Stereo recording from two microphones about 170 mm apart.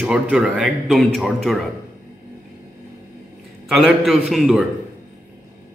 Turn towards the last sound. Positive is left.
turn(degrees=0)  # may be behind; listen again after turning